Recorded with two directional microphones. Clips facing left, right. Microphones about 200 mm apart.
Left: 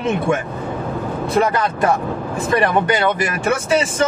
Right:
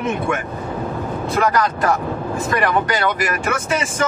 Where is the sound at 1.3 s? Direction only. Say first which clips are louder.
Left 1 dB; 25° left (ahead or behind).